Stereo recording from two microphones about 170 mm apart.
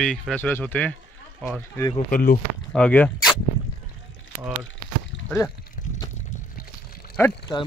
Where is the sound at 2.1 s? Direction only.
55° left (ahead or behind).